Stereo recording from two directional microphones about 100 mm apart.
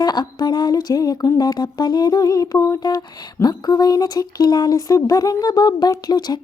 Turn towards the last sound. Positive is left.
turn(degrees=45)  # may be behind; listen again after turning